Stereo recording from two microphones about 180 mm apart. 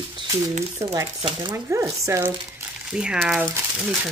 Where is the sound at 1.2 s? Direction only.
25° right (ahead or behind).